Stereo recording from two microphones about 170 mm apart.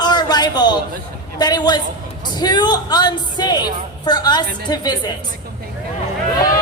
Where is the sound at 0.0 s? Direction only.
25° left (ahead or behind).